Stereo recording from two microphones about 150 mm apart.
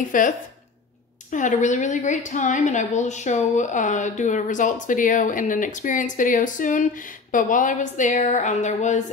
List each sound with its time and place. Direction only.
0.1 s a woman's voice: 60° left (ahead or behind)
1.3 s a woman's voice: 55° left (ahead or behind)